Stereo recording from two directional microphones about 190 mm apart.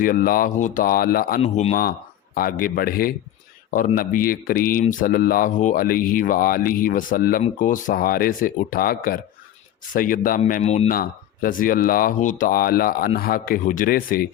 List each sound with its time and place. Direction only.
0.0 s speech: 50° left (ahead or behind)
10.4 s speech: 35° left (ahead or behind)
10.8 s speech: 50° left (ahead or behind)